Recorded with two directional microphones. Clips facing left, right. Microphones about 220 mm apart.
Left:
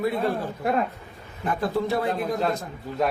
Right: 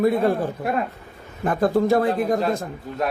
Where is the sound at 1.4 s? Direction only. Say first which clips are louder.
Right 6 dB; 45° right (ahead or behind).